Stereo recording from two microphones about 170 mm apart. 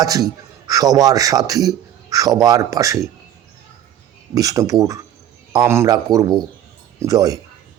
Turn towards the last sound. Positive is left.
turn(degrees=-20)  # may be behind; listen again after turning